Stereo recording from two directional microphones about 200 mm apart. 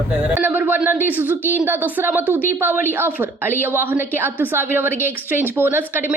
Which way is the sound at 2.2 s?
10° left (ahead or behind).